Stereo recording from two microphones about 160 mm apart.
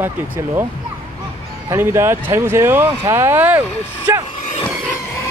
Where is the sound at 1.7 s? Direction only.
15° right (ahead or behind).